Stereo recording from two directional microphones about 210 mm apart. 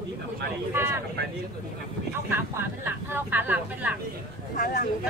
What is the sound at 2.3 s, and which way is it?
Speech, 10° right (ahead or behind).